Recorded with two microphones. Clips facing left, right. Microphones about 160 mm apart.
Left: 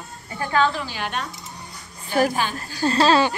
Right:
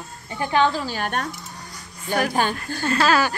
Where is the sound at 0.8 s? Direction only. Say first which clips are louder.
Right 3 dB; 45° right (ahead or behind).